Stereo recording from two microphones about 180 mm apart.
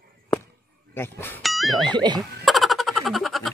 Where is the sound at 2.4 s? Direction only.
Centre (ahead or behind).